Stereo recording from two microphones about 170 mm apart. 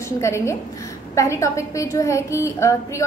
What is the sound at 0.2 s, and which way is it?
A woman's voice, 15° left (ahead or behind).